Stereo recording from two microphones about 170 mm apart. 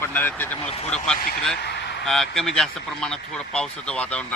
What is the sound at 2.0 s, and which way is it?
Speech, centre (ahead or behind).